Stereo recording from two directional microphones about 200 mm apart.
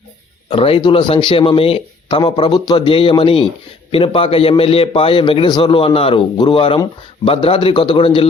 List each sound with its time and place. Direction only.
0.5 s speech: 25° left (ahead or behind)